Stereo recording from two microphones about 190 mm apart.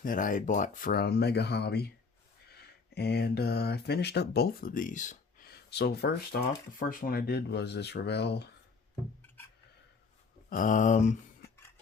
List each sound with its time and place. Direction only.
0.0 s speech: 45° left (ahead or behind)
5.7 s speech: 60° left (ahead or behind)
10.5 s speech: 45° left (ahead or behind)